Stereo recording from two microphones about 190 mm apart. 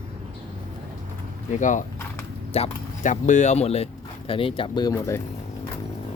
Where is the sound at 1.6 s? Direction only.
40° left (ahead or behind); by 4.9 s 25° left (ahead or behind).